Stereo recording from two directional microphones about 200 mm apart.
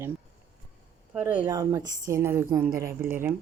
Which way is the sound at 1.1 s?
5° right (ahead or behind).